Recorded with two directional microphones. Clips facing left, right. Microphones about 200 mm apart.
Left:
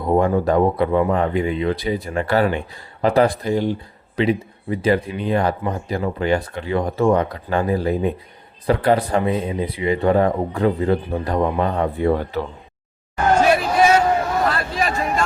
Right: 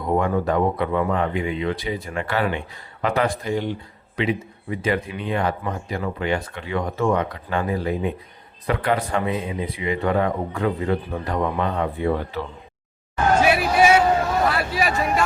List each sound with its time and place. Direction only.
0.0 s speech: 30° left (ahead or behind)
13.4 s hubbub: 10° right (ahead or behind)